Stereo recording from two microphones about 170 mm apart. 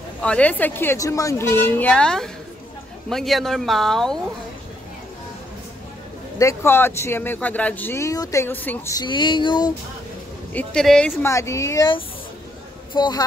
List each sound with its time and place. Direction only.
0.2 s speech: 5° left (ahead or behind)
6.3 s speech: 15° left (ahead or behind)
8.9 s speech: 25° left (ahead or behind)
10.5 s speech: 5° left (ahead or behind)
11.2 s speech: 15° left (ahead or behind)